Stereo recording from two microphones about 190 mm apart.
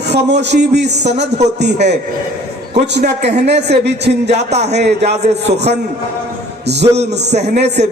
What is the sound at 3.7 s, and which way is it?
Speech, 60° right (ahead or behind).